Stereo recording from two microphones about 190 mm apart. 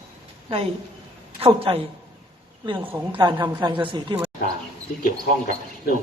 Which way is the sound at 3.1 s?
25° right (ahead or behind).